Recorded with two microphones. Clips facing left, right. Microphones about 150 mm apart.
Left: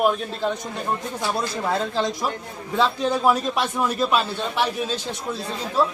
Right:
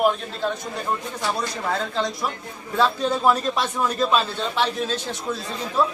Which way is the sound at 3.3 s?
10° left (ahead or behind).